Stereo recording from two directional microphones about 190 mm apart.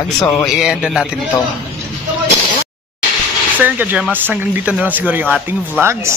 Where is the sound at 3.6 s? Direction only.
10° right (ahead or behind).